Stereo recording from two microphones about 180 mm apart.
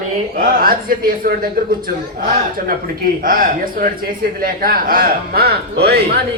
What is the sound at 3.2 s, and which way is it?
A man's voice, 50° right (ahead or behind).